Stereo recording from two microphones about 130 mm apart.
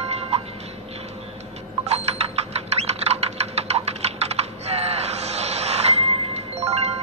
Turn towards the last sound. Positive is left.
turn(degrees=-55)  # may be behind; listen again after turning